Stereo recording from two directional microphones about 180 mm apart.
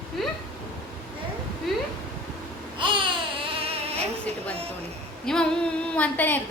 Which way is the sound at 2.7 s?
30° right (ahead or behind).